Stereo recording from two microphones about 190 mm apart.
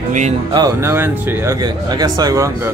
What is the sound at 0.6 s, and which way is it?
Speech, 15° right (ahead or behind).